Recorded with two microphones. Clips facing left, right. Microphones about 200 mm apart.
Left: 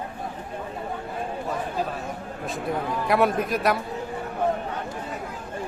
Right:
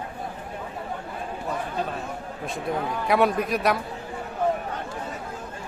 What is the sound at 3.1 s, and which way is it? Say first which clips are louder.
Speech: even; centre (ahead or behind).